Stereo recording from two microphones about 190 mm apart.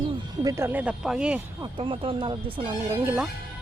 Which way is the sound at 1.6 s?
25° right (ahead or behind).